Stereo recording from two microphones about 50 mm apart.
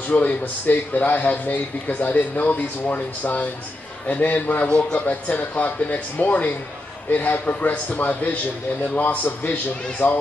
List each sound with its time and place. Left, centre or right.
0.1 s a man's voice: left
4.6 s a man's voice: centre
5.0 s a man's voice: left